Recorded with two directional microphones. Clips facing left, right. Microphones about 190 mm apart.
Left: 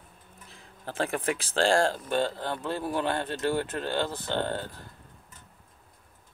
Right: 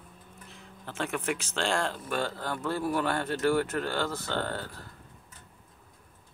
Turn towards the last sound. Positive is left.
turn(degrees=20)  # may be behind; listen again after turning